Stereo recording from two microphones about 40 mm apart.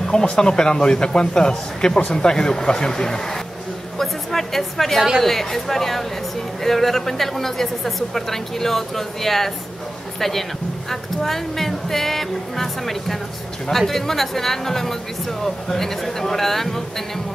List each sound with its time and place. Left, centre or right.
0.1 s a woman's voice: left
4.0 s a sound: centre
5.2 s a woman's voice: centre
10.9 s a woman's voice: centre